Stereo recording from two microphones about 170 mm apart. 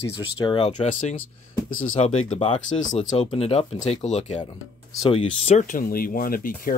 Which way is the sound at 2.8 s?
45° left (ahead or behind).